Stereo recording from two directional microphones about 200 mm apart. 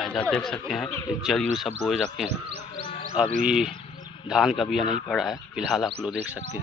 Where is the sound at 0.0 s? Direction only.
5° left (ahead or behind).